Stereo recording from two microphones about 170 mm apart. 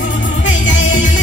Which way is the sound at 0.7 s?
50° left (ahead or behind).